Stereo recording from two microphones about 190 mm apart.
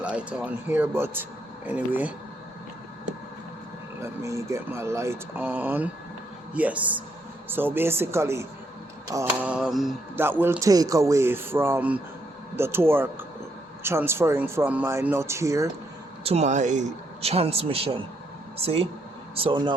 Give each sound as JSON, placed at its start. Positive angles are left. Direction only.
{"t": 0.0, "sound": "speech", "side_deg": -5}
{"t": 4.0, "sound": "speech", "side_deg": -15}
{"t": 9.5, "sound": "mantra", "side_deg": -5}
{"t": 10.2, "sound": "speech", "side_deg": -10}
{"t": 16.2, "sound": "a man's voice", "side_deg": -35}